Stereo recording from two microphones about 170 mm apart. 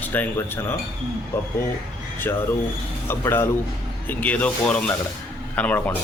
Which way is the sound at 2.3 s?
15° left (ahead or behind).